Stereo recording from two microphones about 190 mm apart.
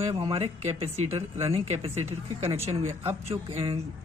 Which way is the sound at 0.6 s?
35° right (ahead or behind).